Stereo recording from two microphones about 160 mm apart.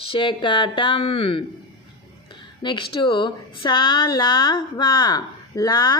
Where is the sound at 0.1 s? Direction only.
30° left (ahead or behind).